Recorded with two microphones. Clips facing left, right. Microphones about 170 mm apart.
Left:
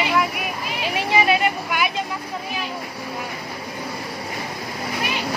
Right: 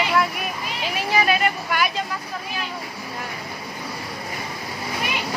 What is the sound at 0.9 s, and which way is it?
Vehicle, 20° left (ahead or behind).